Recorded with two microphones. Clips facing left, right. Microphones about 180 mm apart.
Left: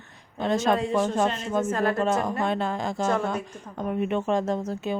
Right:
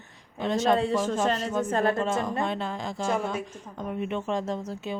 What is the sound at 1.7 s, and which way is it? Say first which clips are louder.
Speech: right 3 dB; 25° right (ahead or behind).